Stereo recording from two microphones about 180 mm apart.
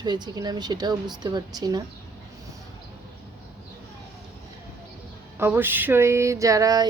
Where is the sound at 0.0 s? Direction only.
25° right (ahead or behind).